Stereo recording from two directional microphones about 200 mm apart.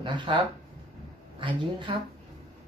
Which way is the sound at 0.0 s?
25° right (ahead or behind).